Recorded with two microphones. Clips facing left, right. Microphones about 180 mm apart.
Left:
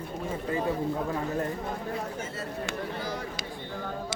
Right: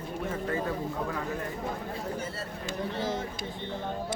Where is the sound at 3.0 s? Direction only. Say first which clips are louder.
Right 3 dB; 25° right (ahead or behind).